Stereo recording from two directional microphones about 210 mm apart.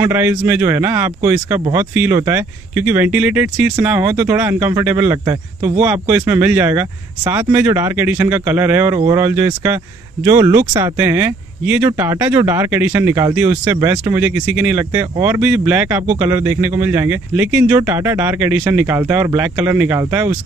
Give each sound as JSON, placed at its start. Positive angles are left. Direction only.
{"t": 0.0, "sound": "speech", "side_deg": -10}